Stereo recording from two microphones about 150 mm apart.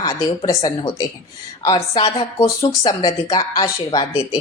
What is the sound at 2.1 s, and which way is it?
Speech, 35° left (ahead or behind).